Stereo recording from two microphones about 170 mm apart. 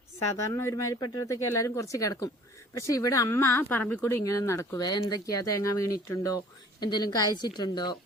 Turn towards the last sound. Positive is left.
turn(degrees=25)  # may be behind; listen again after turning